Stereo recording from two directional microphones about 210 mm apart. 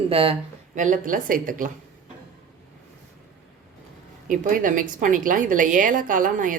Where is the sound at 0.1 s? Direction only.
25° right (ahead or behind).